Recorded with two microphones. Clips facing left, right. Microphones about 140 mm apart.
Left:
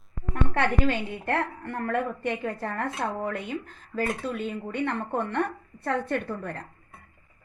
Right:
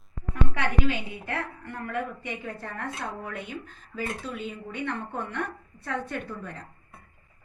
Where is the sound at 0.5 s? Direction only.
60° left (ahead or behind).